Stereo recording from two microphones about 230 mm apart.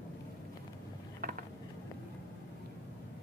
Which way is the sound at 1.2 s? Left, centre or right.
Right.